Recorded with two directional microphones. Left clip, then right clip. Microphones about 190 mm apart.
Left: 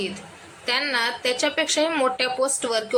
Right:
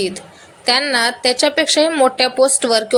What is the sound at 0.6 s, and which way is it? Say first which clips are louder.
A woman's voice: right 8 dB; 25° right (ahead or behind).